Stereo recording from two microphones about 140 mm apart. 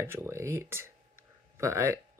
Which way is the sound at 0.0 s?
20° right (ahead or behind).